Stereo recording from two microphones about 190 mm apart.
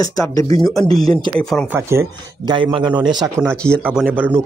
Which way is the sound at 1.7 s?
15° right (ahead or behind).